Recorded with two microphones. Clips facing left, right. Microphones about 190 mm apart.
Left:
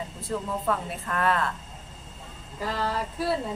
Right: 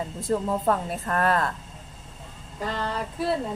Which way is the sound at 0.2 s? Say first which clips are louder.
Right 6 dB; 40° right (ahead or behind).